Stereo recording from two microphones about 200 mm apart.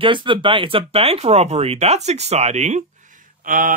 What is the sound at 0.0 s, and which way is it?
Speech, 25° right (ahead or behind).